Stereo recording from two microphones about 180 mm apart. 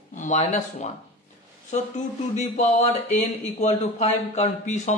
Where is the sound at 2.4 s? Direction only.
40° left (ahead or behind).